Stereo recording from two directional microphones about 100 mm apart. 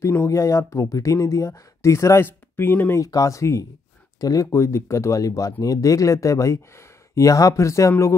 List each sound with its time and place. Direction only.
0.0 s speech: 25° left (ahead or behind)
3.0 s speech: 35° left (ahead or behind)